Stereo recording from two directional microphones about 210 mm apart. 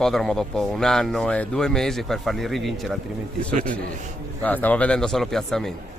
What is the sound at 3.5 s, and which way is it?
Speech, 35° right (ahead or behind).